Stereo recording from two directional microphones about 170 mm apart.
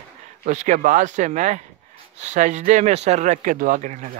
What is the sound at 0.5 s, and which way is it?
Speech, 45° right (ahead or behind).